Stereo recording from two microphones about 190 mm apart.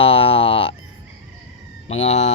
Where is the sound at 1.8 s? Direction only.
35° left (ahead or behind).